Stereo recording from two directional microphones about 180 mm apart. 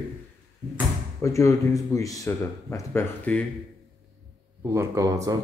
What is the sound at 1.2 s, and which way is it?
Speech, 15° left (ahead or behind).